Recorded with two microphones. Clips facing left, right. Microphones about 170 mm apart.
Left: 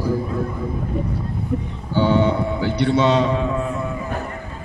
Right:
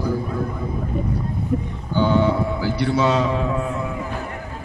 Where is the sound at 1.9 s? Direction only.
Centre (ahead or behind).